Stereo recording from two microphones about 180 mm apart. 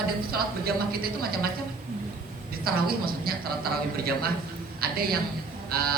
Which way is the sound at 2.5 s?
55° right (ahead or behind).